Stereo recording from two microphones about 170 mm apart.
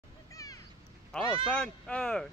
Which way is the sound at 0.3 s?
20° left (ahead or behind).